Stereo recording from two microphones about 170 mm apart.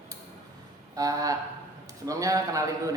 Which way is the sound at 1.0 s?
20° right (ahead or behind).